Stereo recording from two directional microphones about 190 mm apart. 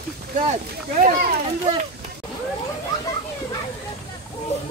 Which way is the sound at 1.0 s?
45° right (ahead or behind).